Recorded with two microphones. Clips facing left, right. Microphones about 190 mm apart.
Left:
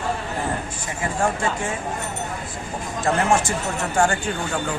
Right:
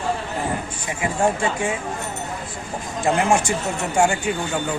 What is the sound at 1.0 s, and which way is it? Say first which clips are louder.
Speech: right 2 dB; 15° right (ahead or behind).